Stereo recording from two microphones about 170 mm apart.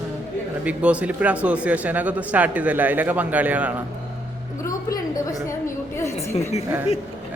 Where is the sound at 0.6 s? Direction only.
5° right (ahead or behind).